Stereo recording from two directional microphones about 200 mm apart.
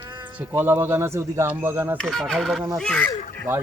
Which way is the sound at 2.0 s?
Centre (ahead or behind).